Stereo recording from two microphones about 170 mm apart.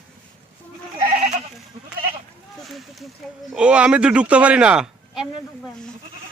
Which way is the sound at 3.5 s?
5° right (ahead or behind).